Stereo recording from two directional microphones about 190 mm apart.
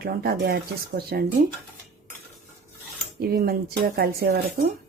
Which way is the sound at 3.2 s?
55° right (ahead or behind).